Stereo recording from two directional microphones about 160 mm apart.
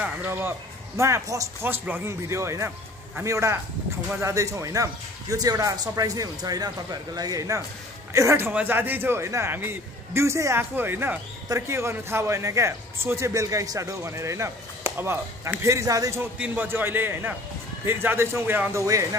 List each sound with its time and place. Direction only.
0.0 s a man's voice: 15° right (ahead or behind)